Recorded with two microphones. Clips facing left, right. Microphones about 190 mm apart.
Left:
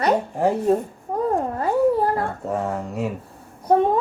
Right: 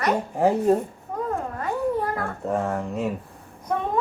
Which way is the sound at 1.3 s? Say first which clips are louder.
Left 6 dB; 35° left (ahead or behind).